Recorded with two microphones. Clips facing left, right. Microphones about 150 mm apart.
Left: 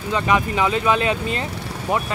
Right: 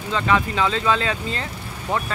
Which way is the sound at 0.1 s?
15° left (ahead or behind).